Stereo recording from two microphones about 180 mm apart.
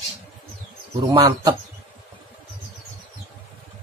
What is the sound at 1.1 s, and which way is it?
Speech, 20° right (ahead or behind).